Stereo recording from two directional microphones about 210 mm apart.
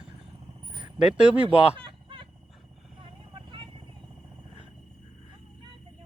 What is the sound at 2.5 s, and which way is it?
Wild animals, centre (ahead or behind).